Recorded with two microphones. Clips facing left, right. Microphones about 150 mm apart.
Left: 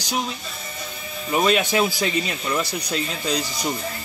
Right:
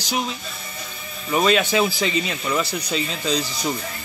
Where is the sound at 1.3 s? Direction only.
5° left (ahead or behind).